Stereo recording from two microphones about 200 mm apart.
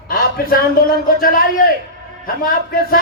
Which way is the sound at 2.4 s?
45° left (ahead or behind).